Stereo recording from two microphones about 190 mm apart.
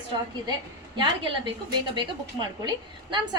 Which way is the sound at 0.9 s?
25° right (ahead or behind).